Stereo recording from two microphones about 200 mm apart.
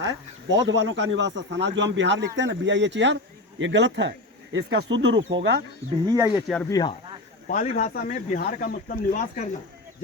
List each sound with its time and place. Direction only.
0.0 s speech: 60° right (ahead or behind)
6.1 s speech: 15° right (ahead or behind)
6.7 s speech: 20° left (ahead or behind)
7.4 s speech: 40° left (ahead or behind)
7.9 s speech: 55° left (ahead or behind)
8.4 s speech: 40° left (ahead or behind)